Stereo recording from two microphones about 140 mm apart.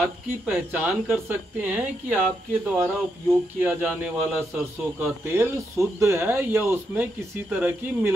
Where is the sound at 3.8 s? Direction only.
10° right (ahead or behind).